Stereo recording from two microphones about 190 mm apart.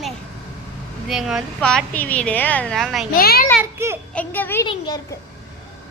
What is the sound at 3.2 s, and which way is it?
Speech, 55° left (ahead or behind).